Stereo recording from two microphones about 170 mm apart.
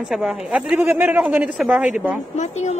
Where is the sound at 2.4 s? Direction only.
40° left (ahead or behind).